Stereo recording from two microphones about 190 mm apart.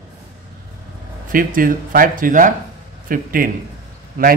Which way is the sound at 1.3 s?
45° right (ahead or behind).